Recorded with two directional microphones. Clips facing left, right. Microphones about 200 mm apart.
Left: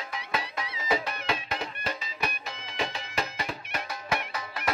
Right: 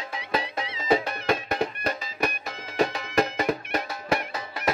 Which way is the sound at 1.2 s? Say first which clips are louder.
Right 7 dB; 50° right (ahead or behind).